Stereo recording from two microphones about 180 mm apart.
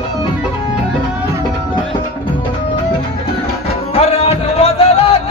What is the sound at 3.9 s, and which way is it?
Music, 35° left (ahead or behind).